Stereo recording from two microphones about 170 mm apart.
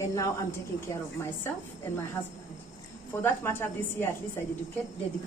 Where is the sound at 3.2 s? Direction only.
15° left (ahead or behind).